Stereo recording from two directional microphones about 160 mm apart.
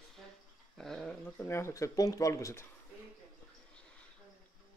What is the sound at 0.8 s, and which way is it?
Speech, 5° left (ahead or behind).